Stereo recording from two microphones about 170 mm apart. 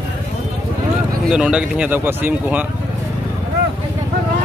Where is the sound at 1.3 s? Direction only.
5° right (ahead or behind).